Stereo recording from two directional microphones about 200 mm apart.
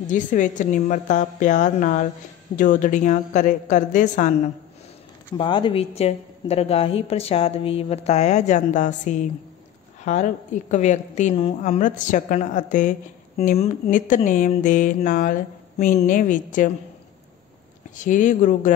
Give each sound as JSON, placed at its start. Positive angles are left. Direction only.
{"t": 0.0, "sound": "a woman's voice", "side_deg": 40}
{"t": 5.4, "sound": "a woman's voice", "side_deg": 25}
{"t": 17.9, "sound": "a woman's voice", "side_deg": 40}